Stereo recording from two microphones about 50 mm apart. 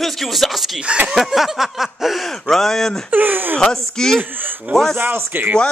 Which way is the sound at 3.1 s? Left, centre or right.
Right.